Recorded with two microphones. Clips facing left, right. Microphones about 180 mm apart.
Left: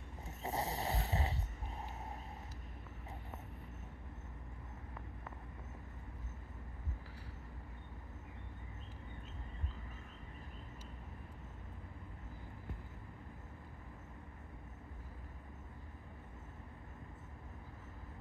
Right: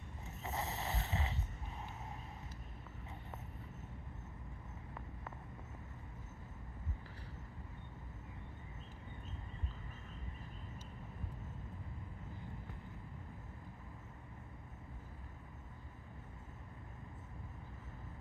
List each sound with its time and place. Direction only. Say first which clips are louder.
0.4 s snoring: left 3 dB; 30° left (ahead or behind)